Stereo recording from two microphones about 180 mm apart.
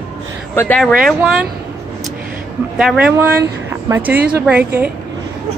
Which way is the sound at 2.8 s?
5° right (ahead or behind).